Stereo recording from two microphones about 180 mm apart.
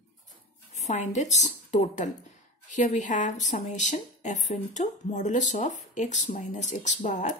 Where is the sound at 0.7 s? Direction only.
40° left (ahead or behind).